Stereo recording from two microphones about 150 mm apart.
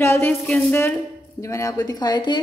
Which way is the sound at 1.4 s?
20° left (ahead or behind).